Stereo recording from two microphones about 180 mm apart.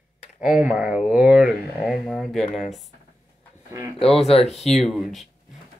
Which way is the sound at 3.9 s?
35° left (ahead or behind).